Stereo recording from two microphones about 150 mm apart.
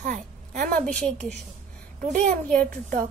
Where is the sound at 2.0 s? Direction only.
60° right (ahead or behind).